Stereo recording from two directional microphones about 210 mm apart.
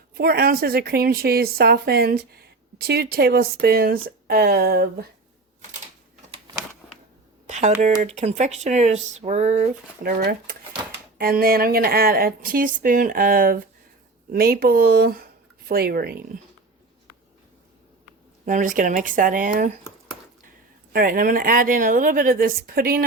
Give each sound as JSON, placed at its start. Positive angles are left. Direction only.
{"t": 0.1, "sound": "a woman's voice", "side_deg": -45}
{"t": 7.4, "sound": "speech", "side_deg": -35}
{"t": 10.0, "sound": "a woman's voice", "side_deg": -45}
{"t": 18.4, "sound": "speech", "side_deg": -40}
{"t": 20.9, "sound": "speech", "side_deg": -45}